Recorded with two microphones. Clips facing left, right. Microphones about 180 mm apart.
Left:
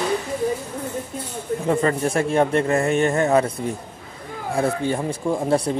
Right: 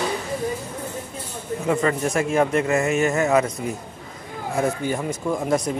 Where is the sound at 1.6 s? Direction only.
30° left (ahead or behind).